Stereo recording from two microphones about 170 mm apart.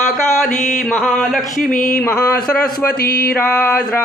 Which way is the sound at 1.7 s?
55° left (ahead or behind).